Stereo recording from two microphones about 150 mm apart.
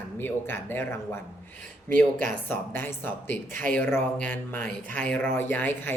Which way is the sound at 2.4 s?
15° left (ahead or behind).